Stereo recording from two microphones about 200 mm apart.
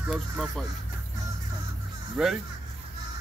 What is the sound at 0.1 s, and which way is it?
Speech, centre (ahead or behind).